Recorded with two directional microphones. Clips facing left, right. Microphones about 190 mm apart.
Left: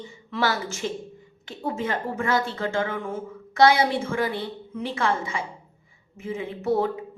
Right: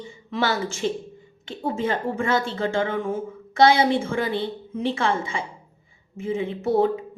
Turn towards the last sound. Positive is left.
turn(degrees=-30)  # may be behind; listen again after turning